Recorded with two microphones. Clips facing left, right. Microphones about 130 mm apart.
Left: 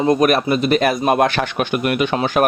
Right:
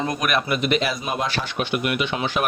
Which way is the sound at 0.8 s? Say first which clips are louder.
Left 10 dB; 55° left (ahead or behind).